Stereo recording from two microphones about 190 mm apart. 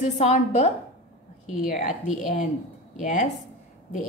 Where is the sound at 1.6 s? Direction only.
40° left (ahead or behind).